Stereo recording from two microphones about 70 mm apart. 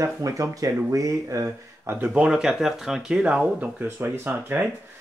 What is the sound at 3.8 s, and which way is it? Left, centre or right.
Speech, right.